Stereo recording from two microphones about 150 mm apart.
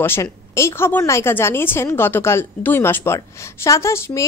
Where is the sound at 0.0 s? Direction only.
15° left (ahead or behind).